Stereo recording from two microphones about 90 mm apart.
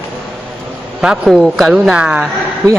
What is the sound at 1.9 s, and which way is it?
Speech, 10° right (ahead or behind).